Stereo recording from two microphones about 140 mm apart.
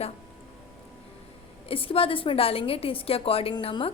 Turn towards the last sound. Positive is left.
turn(degrees=40)  # may be behind; listen again after turning